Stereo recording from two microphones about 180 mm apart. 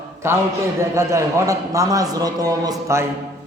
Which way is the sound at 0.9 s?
15° right (ahead or behind).